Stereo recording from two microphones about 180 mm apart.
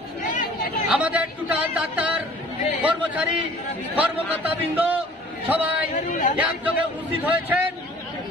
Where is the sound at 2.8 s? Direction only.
10° right (ahead or behind).